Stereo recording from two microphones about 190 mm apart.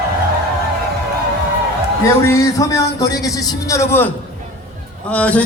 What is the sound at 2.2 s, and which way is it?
A man's voice, 15° left (ahead or behind).